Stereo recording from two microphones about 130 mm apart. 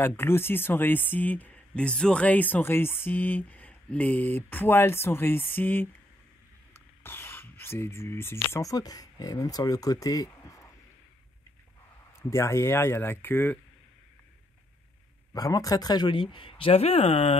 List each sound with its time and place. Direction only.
0.0 s speech: 20° left (ahead or behind)
12.2 s speech: 20° left (ahead or behind)
15.3 s speech: 25° left (ahead or behind); by 17.4 s 50° left (ahead or behind)